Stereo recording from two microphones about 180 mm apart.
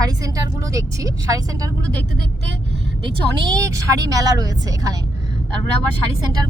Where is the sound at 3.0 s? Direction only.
20° right (ahead or behind).